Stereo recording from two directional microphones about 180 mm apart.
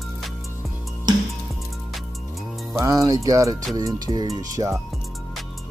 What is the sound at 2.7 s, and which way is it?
Speech, 15° right (ahead or behind).